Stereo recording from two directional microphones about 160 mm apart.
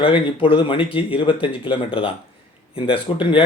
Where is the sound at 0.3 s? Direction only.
35° left (ahead or behind).